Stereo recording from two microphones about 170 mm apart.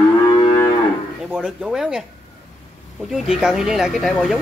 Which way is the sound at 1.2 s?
Centre (ahead or behind).